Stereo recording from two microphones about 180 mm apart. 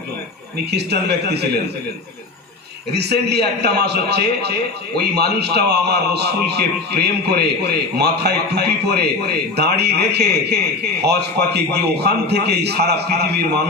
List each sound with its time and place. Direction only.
0.7 s a man's voice: 65° right (ahead or behind)
2.9 s a man's voice: 65° right (ahead or behind)